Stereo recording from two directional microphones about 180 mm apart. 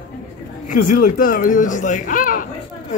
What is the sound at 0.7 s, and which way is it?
Speech, 50° left (ahead or behind).